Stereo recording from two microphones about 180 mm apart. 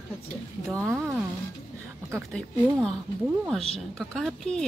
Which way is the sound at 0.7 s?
15° right (ahead or behind).